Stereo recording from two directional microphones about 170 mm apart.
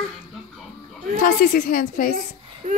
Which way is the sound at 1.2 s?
60° left (ahead or behind).